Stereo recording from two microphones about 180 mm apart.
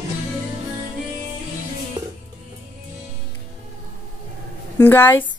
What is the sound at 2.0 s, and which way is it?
Music, 25° right (ahead or behind).